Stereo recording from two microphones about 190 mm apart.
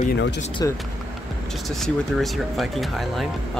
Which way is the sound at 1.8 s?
Centre (ahead or behind).